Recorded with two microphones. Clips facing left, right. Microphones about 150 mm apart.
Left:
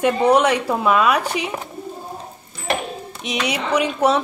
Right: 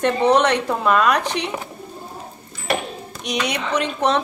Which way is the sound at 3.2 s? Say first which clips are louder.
Left 1 dB; 5° left (ahead or behind).